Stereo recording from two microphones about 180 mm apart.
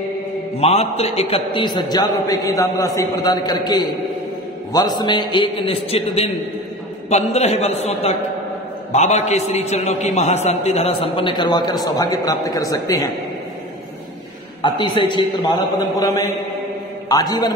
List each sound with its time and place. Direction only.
0.6 s a man's voice: 35° left (ahead or behind)
14.6 s a man's voice: 25° left (ahead or behind)